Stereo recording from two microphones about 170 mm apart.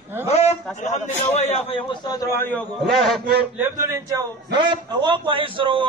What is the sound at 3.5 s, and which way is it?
A man's voice, 15° right (ahead or behind).